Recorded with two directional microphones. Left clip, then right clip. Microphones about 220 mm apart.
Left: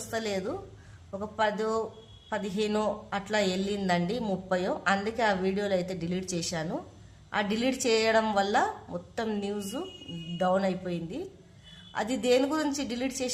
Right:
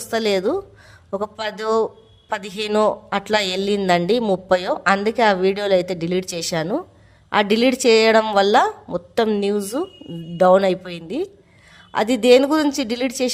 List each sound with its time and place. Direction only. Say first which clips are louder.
0.1 s a man's voice: right 13 dB; 40° right (ahead or behind)